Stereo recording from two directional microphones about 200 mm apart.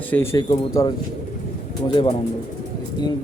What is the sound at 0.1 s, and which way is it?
Speech, 10° left (ahead or behind).